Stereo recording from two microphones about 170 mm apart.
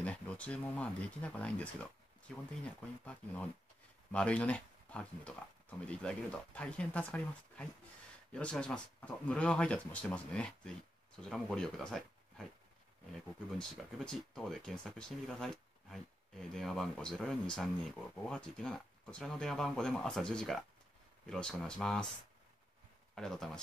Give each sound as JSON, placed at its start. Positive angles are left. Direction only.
{"t": 0.0, "sound": "speech", "side_deg": 5}
{"t": 13.6, "sound": "speech", "side_deg": 0}
{"t": 23.1, "sound": "speech", "side_deg": 5}